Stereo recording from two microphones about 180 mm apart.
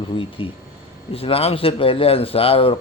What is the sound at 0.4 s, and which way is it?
Speech, 25° left (ahead or behind).